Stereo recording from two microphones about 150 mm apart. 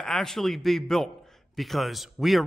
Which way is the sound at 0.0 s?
5° left (ahead or behind).